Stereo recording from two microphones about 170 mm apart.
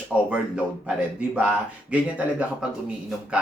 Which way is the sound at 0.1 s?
5° right (ahead or behind).